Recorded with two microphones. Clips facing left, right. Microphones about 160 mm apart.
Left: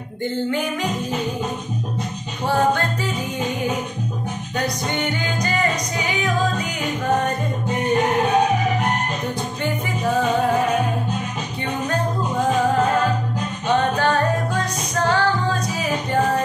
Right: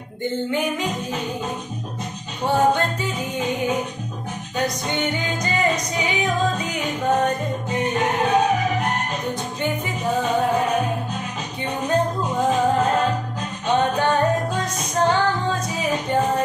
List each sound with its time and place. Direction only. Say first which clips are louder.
13.9 s music: even; 20° right (ahead or behind)